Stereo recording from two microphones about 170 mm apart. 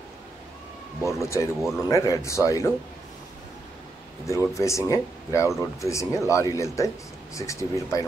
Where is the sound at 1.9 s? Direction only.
20° left (ahead or behind).